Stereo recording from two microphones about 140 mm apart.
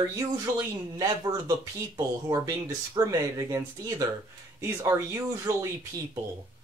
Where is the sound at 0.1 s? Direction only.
25° right (ahead or behind).